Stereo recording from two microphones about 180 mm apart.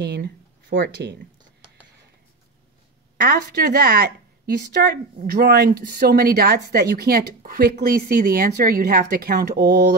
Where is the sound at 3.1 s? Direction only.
60° right (ahead or behind).